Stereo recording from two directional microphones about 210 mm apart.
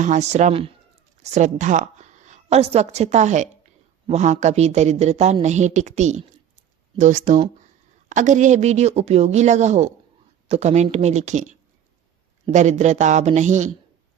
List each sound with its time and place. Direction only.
0.0 s a woman's voice: 35° right (ahead or behind)